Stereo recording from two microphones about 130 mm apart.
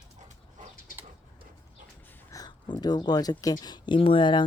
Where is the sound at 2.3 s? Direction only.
30° left (ahead or behind).